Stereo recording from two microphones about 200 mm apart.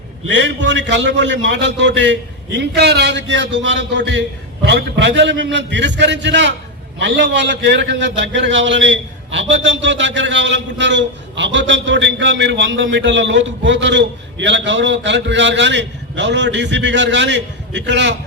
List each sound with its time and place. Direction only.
0.3 s a man's voice: 65° right (ahead or behind)